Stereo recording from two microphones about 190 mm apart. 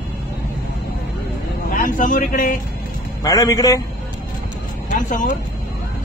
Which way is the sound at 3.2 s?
20° left (ahead or behind).